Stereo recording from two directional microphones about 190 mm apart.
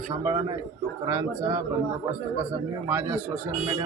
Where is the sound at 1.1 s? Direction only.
15° right (ahead or behind).